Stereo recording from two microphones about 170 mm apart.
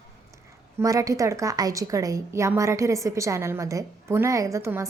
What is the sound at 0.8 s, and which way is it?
A woman's voice, 20° right (ahead or behind).